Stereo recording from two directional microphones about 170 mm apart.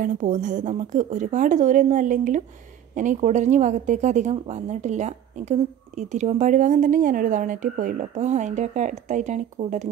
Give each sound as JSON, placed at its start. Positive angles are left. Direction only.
{"t": 0.0, "sound": "a woman's voice", "side_deg": -45}